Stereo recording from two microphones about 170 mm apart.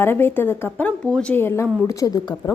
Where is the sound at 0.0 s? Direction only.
15° left (ahead or behind).